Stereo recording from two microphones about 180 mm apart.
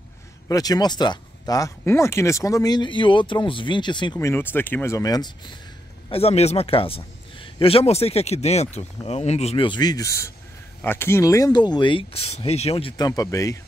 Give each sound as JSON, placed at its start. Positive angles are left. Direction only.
{"t": 0.5, "sound": "speech", "side_deg": 20}
{"t": 6.0, "sound": "a man's voice", "side_deg": 35}